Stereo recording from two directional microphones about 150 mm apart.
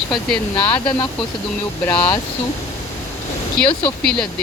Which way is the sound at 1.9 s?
20° left (ahead or behind).